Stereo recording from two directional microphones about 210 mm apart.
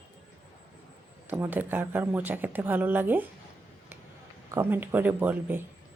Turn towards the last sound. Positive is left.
turn(degrees=-10)  # may be behind; listen again after turning